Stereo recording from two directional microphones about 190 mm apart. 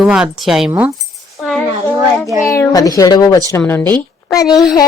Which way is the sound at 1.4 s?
Centre (ahead or behind).